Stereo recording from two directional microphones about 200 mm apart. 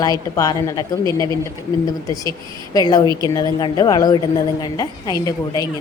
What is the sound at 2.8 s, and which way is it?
A woman's voice, 20° left (ahead or behind).